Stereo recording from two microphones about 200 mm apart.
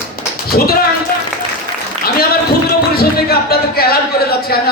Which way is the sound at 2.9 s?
50° left (ahead or behind).